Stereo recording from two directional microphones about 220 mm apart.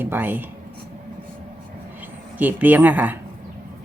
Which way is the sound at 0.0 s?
10° right (ahead or behind).